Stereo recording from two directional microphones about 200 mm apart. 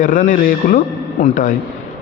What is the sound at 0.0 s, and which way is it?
A man's voice, 40° left (ahead or behind).